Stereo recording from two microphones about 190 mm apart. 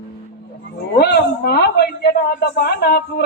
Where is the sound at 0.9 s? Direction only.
60° left (ahead or behind).